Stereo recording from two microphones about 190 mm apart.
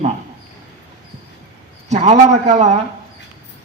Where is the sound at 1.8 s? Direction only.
35° right (ahead or behind).